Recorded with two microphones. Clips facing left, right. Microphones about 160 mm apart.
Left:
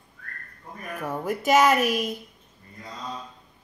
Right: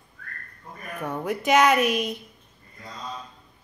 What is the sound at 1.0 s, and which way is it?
A woman's voice, 5° left (ahead or behind).